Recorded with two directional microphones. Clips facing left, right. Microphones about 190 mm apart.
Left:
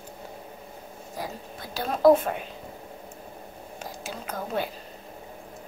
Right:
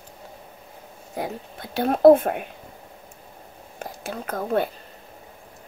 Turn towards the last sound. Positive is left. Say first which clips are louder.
# right 6 dB
turn(degrees=-50)  # may be behind; listen again after turning